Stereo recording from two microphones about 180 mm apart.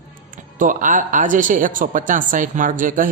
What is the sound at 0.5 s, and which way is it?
Speech, 45° right (ahead or behind).